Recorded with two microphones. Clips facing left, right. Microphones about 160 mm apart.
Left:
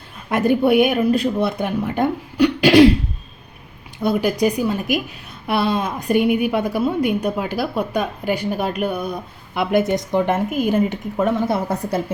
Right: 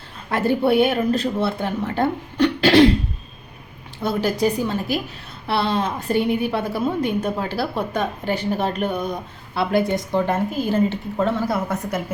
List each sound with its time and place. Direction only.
0.3 s a woman's voice: 15° left (ahead or behind)
4.0 s a woman's voice: 15° left (ahead or behind)
9.6 s a woman's voice: 20° left (ahead or behind)